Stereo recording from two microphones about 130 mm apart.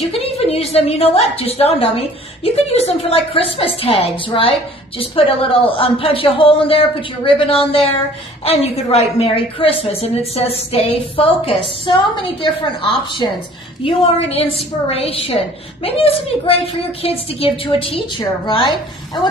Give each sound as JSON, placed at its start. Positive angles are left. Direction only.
{"t": 0.1, "sound": "a woman's voice", "side_deg": 50}
{"t": 13.8, "sound": "a woman's voice", "side_deg": 50}